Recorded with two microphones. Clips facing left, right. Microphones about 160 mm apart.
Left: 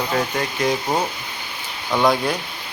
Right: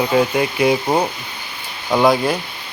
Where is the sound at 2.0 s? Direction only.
5° right (ahead or behind).